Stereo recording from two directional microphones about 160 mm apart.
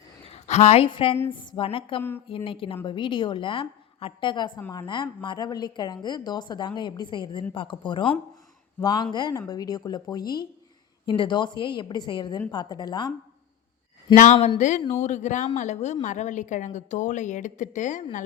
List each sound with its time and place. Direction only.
0.3 s a woman's voice: 45° left (ahead or behind)
2.0 s speech: 15° left (ahead or behind)
2.2 s a woman's voice: 35° left (ahead or behind)
14.3 s a woman's voice: 40° left (ahead or behind)